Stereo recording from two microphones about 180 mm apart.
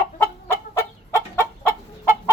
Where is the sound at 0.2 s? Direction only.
15° left (ahead or behind).